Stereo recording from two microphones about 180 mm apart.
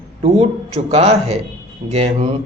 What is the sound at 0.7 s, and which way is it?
Speech, 35° right (ahead or behind).